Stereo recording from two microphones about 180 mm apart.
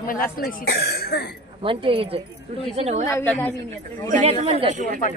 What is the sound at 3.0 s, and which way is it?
A man's voice, 10° left (ahead or behind).